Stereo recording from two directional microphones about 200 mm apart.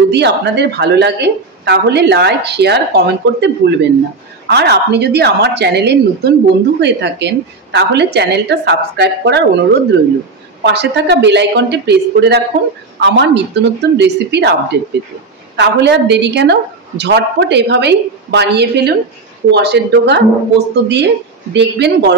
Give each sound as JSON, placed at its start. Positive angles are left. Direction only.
{"t": 0.1, "sound": "a woman's voice", "side_deg": -60}